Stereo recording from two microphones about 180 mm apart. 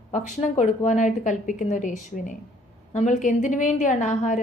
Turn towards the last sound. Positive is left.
turn(degrees=45)  # may be behind; listen again after turning